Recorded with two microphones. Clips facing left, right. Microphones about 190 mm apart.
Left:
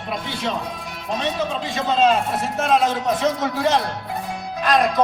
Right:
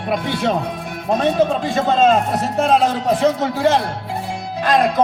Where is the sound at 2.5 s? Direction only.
35° right (ahead or behind).